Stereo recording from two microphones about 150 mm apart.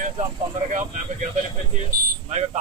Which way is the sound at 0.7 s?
55° right (ahead or behind).